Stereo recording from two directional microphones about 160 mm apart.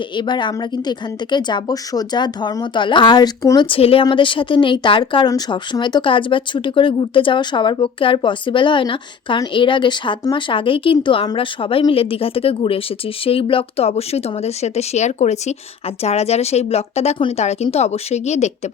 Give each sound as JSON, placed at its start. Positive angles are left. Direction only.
{"t": 0.2, "sound": "speech", "side_deg": 30}
{"t": 3.7, "sound": "speech", "side_deg": 35}